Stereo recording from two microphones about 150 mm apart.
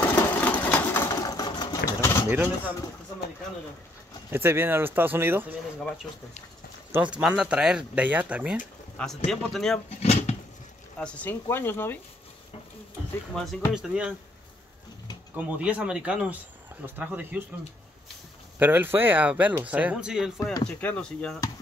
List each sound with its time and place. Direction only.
0.0 s sewing machine: 15° left (ahead or behind)
2.0 s pigeon: 20° left (ahead or behind)
2.2 s speech: 10° right (ahead or behind)
4.3 s speech: 15° right (ahead or behind)
6.9 s speech: 10° right (ahead or behind)
8.9 s speech: 5° left (ahead or behind)
9.8 s a sound: 45° left (ahead or behind)
11.0 s speech: 10° left (ahead or behind)
13.3 s speech: centre (ahead or behind)
15.3 s speech: 10° right (ahead or behind)
18.6 s speech: 15° right (ahead or behind)
20.8 s speech: 10° left (ahead or behind)